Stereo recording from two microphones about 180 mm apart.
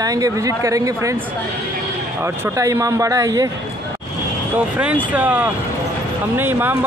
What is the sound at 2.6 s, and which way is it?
Speech, 15° right (ahead or behind).